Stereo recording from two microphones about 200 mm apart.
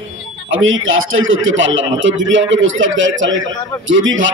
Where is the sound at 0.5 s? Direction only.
80° right.